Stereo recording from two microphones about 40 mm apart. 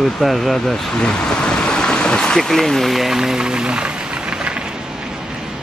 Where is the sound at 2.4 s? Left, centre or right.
Centre.